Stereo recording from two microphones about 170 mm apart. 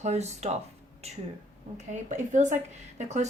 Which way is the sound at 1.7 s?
45° right (ahead or behind).